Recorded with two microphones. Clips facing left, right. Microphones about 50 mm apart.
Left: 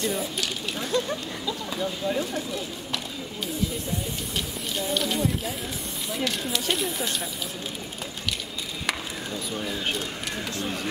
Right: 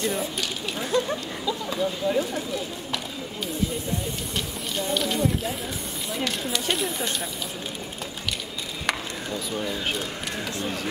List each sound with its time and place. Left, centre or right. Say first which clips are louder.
0.0 s a sound: right 1 dB; centre
0.8 s a sound: right 2 dB; centre
1.4 s speech: right 6 dB; centre
4.7 s speech: right 1 dB; centre
8.8 s chop: right 2 dB; centre
10.6 s speech: even; centre